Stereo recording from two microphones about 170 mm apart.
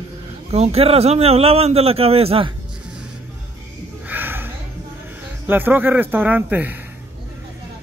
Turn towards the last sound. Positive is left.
turn(degrees=-10)  # may be behind; listen again after turning